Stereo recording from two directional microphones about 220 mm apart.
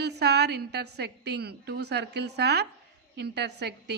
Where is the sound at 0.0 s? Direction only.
50° right (ahead or behind).